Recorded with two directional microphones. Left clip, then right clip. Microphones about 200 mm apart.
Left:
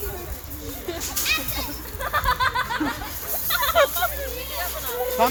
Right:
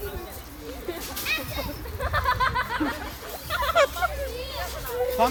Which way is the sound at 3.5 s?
30° left (ahead or behind).